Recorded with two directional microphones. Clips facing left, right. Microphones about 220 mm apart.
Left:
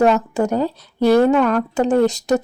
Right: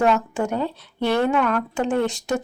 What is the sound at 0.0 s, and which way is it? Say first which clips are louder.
A woman's voice: left 5 dB; 40° left (ahead or behind).